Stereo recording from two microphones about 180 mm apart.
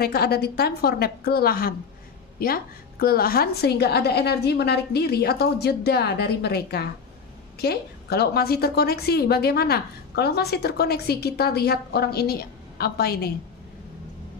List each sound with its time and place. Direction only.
0.0 s a woman's voice: 60° left (ahead or behind)